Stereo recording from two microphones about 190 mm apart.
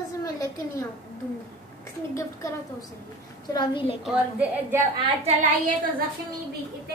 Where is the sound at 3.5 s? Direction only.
25° left (ahead or behind).